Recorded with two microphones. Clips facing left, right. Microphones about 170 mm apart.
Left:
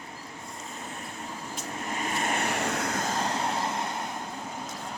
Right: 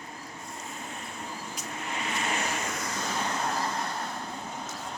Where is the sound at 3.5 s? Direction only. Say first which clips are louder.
Left 1 dB; 20° left (ahead or behind).